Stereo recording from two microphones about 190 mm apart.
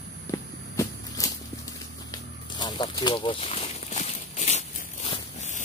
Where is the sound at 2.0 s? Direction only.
20° left (ahead or behind).